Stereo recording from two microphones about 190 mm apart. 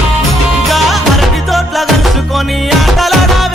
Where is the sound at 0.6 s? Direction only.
Centre (ahead or behind).